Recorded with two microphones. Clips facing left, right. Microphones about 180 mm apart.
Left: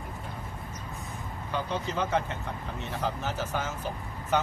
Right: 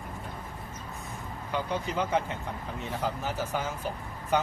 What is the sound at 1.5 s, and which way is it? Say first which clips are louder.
Speech: right 1 dB; 15° right (ahead or behind).